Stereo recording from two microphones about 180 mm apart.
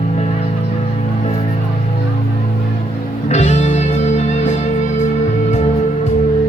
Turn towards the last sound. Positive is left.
turn(degrees=40)  # may be behind; listen again after turning